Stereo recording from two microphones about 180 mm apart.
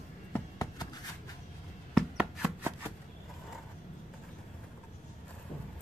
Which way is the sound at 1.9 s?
5° right (ahead or behind).